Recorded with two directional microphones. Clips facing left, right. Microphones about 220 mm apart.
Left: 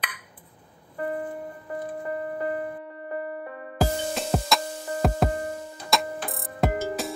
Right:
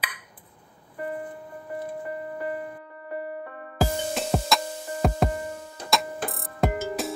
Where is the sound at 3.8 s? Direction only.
Centre (ahead or behind).